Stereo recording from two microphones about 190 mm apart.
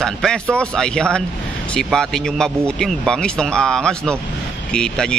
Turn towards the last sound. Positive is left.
turn(degrees=5)  # may be behind; listen again after turning